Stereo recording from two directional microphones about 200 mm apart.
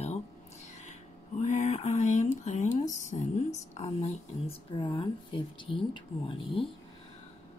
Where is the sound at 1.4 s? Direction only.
40° left (ahead or behind).